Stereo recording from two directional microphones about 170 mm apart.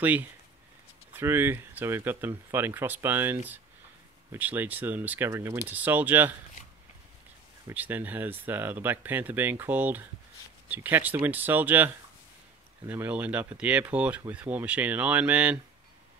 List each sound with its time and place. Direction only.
0.0 s speech: 10° right (ahead or behind)
7.6 s speech: 10° right (ahead or behind)